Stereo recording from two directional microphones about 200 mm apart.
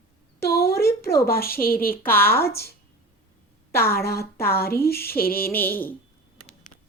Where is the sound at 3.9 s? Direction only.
50° left (ahead or behind).